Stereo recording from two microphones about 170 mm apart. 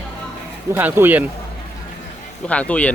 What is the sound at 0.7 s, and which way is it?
Speech, 10° right (ahead or behind).